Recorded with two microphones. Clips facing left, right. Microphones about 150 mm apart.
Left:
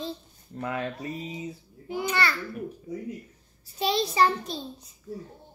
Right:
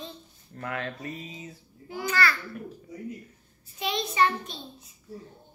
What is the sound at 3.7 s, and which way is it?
A child's voice, 35° left (ahead or behind).